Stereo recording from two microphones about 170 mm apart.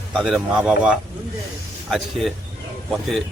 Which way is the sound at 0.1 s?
Centre (ahead or behind).